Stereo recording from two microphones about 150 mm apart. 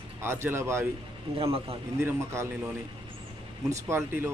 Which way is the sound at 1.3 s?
40° right (ahead or behind).